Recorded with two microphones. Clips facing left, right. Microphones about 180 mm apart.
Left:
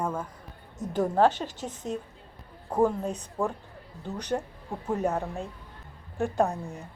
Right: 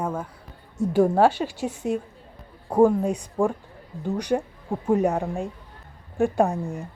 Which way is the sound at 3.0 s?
10° right (ahead or behind).